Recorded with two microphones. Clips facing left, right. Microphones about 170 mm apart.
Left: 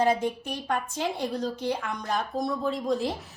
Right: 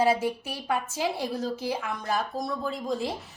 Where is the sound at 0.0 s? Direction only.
5° right (ahead or behind).